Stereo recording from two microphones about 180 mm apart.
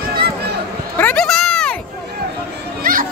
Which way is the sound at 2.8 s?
50° right (ahead or behind).